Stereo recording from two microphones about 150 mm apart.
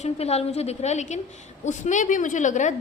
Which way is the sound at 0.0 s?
45° left (ahead or behind).